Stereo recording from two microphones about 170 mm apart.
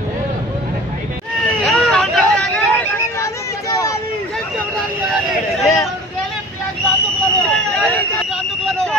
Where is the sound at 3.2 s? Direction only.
20° left (ahead or behind).